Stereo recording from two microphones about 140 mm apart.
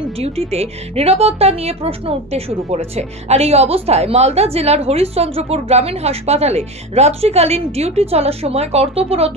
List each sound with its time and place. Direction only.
0.2 s speech: 50° right (ahead or behind)